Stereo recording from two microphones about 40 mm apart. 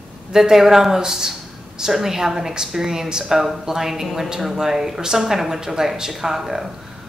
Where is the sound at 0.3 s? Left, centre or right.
Centre.